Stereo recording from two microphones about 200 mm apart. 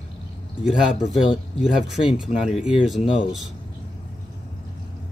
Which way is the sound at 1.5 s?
5° right (ahead or behind).